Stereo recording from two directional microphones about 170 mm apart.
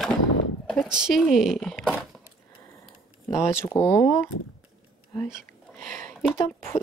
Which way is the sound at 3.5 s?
15° left (ahead or behind).